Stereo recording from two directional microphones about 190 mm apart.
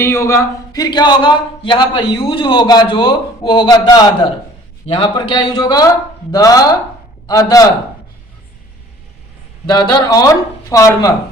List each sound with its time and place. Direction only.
0.0 s speech: 15° left (ahead or behind)
5.0 s speech: 20° left (ahead or behind)
9.6 s speech: 20° left (ahead or behind)